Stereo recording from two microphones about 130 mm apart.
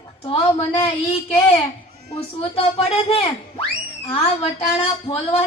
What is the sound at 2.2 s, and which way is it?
A woman's voice, 50° left (ahead or behind).